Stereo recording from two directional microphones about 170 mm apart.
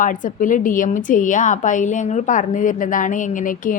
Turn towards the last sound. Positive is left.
turn(degrees=50)  # may be behind; listen again after turning